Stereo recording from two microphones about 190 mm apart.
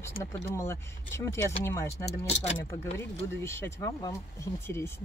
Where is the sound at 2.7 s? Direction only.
15° left (ahead or behind).